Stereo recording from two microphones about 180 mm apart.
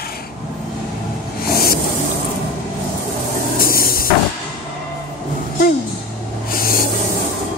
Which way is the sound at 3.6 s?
55° left (ahead or behind).